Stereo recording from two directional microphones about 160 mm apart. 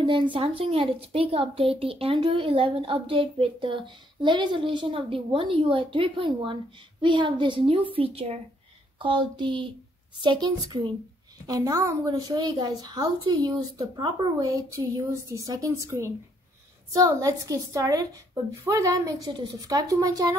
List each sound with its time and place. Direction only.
0.0 s a woman's voice: 30° right (ahead or behind)